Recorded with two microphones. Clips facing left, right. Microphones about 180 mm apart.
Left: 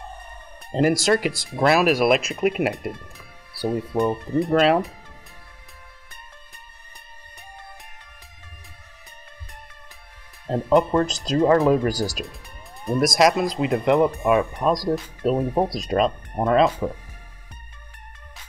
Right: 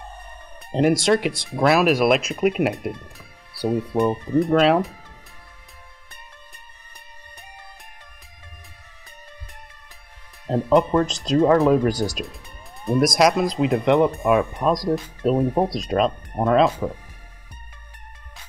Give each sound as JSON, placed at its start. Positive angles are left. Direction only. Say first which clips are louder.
{"t": 0.7, "sound": "speech", "louder": "right 1 dB", "side_deg": 0}
{"t": 10.4, "sound": "speech", "louder": "right 1 dB", "side_deg": 0}